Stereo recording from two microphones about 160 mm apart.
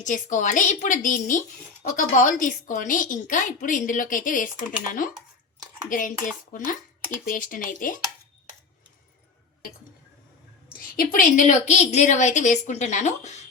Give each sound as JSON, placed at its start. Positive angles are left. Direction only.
{"t": 0.0, "sound": "a woman's voice", "side_deg": 50}
{"t": 10.7, "sound": "a woman's voice", "side_deg": 65}